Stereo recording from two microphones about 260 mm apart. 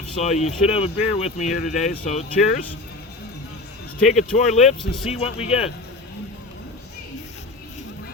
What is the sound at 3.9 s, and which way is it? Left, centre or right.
Speech, centre.